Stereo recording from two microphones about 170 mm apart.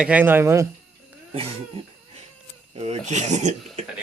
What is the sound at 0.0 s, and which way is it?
Speech, 10° right (ahead or behind).